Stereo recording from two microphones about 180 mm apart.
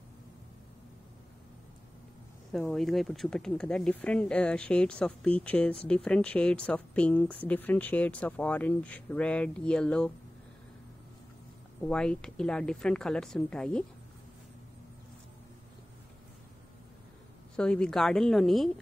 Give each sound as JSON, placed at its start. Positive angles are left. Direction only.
{"t": 2.7, "sound": "speech", "side_deg": 0}
{"t": 11.8, "sound": "speech", "side_deg": 5}
{"t": 17.6, "sound": "speech", "side_deg": 5}